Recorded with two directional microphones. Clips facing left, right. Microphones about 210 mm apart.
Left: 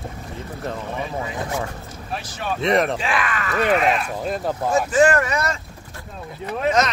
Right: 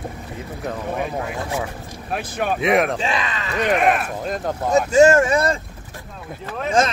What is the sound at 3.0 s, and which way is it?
Speech, 25° right (ahead or behind).